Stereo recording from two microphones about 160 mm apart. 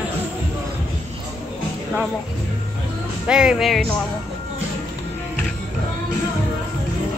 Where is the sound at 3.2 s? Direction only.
5° right (ahead or behind).